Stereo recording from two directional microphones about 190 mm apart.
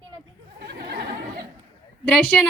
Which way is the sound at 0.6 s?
60° right (ahead or behind).